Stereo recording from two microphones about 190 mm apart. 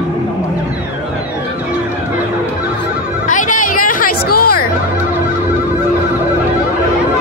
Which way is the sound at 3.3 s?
45° left (ahead or behind).